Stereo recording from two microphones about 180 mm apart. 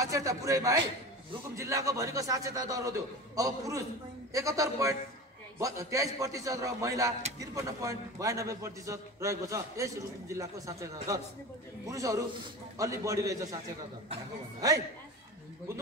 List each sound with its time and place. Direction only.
0.0 s a man's voice: 20° right (ahead or behind)